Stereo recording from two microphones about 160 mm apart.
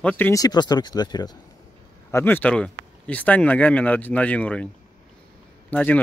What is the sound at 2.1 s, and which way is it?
Speech, 15° left (ahead or behind).